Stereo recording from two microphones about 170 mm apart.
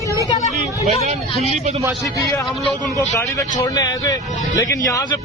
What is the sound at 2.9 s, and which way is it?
A man's voice, 20° left (ahead or behind).